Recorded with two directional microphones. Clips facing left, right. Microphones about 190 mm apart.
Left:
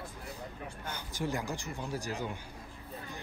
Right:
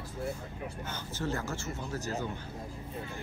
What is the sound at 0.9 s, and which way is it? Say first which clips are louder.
Speech: even; 15° left (ahead or behind).